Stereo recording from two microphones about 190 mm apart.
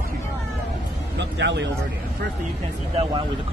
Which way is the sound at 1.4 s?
65° right (ahead or behind).